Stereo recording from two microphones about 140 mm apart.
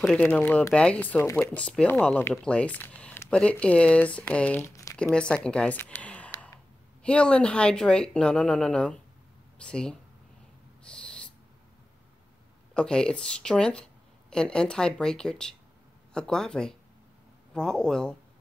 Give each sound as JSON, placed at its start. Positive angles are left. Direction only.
{"t": 0.0, "sound": "speech", "side_deg": 5}
{"t": 4.6, "sound": "crumpling", "side_deg": 25}
{"t": 4.9, "sound": "speech", "side_deg": 5}
{"t": 10.8, "sound": "owl", "side_deg": 5}
{"t": 12.7, "sound": "speech", "side_deg": 5}